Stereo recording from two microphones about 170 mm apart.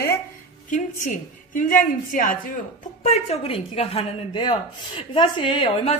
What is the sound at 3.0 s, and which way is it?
A woman's voice, 40° left (ahead or behind).